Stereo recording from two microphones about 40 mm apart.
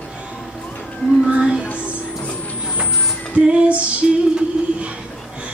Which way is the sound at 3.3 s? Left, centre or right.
Right.